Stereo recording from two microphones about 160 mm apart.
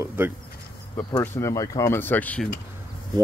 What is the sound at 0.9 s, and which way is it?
Speech, 20° left (ahead or behind).